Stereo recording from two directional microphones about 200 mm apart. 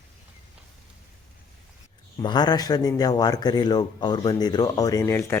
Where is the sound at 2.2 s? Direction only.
20° left (ahead or behind).